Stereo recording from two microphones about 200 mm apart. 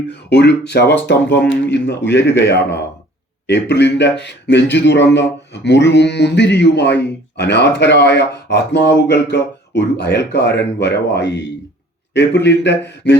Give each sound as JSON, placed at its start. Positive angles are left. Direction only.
{"t": 0.1, "sound": "a man's voice", "side_deg": 60}